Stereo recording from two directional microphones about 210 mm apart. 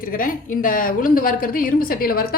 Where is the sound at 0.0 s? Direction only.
40° left (ahead or behind).